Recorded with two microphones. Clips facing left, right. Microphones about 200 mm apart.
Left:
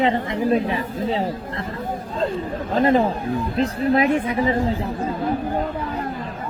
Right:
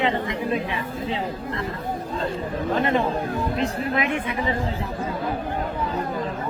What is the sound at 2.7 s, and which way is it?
Speech, 35° left (ahead or behind).